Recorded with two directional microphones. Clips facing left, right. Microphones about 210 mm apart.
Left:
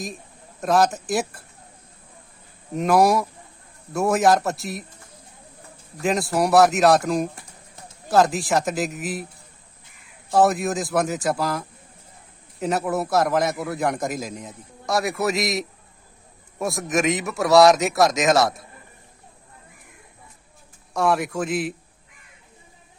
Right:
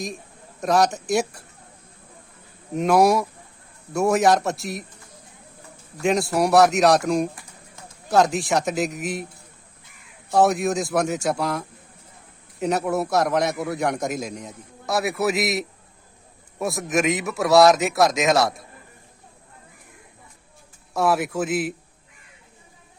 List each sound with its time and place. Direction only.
0.6 s a man's voice: centre (ahead or behind)
2.7 s a man's voice: centre (ahead or behind)
6.0 s a man's voice: centre (ahead or behind)
10.3 s a man's voice: centre (ahead or behind)
20.9 s a man's voice: centre (ahead or behind)